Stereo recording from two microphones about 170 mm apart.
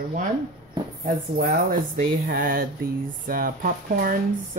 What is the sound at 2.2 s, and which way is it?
Speech, 55° right (ahead or behind).